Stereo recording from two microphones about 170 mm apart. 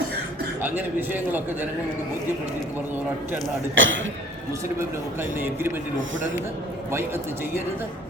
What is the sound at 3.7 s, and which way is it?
Speech, 90° right.